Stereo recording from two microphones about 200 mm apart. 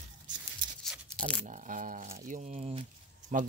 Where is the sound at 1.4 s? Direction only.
40° right (ahead or behind).